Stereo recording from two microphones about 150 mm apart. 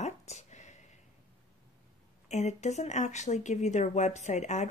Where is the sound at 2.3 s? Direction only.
50° left (ahead or behind).